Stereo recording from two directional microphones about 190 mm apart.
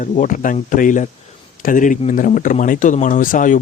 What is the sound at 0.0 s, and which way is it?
A man's voice, 45° left (ahead or behind).